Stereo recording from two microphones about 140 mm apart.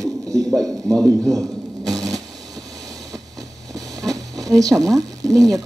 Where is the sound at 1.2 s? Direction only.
25° right (ahead or behind).